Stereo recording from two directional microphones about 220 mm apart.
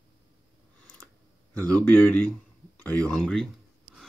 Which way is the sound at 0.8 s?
5° left (ahead or behind).